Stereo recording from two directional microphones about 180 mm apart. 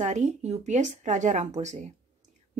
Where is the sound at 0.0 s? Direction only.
40° right (ahead or behind).